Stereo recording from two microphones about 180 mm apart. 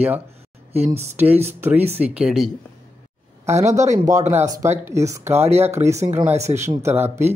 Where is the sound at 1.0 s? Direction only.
10° right (ahead or behind).